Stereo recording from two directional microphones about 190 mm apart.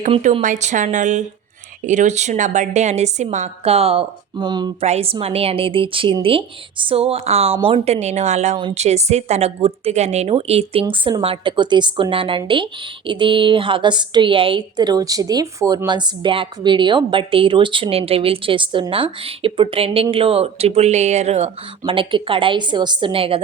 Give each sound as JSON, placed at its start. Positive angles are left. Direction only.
{"t": 0.4, "sound": "a woman's voice", "side_deg": -40}